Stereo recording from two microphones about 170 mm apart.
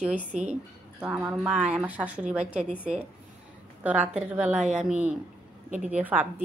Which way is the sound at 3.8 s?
10° right (ahead or behind).